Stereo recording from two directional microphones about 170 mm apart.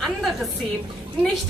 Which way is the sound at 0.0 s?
Centre (ahead or behind).